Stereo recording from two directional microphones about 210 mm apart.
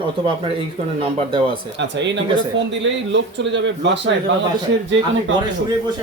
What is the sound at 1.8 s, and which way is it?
Speech, 60° right (ahead or behind).